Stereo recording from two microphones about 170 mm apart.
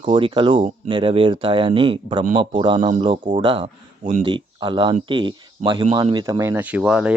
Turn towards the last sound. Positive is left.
turn(degrees=-5)  # may be behind; listen again after turning